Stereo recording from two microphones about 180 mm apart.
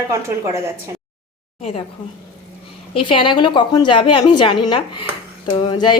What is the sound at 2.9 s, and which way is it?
A woman's voice, 30° left (ahead or behind).